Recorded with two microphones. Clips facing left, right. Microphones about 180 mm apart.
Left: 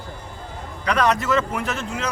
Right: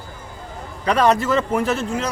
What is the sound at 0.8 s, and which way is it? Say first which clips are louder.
A man's voice: right 4 dB; 30° right (ahead or behind).